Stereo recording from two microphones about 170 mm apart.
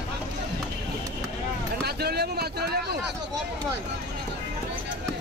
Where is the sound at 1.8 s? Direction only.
70° right (ahead or behind).